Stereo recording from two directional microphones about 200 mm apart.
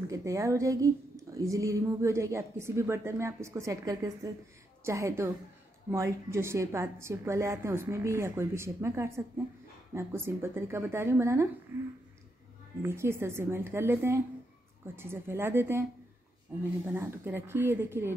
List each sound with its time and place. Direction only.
0.1 s speech: 15° right (ahead or behind)
12.8 s speech: 15° right (ahead or behind)
16.8 s speech: 10° right (ahead or behind)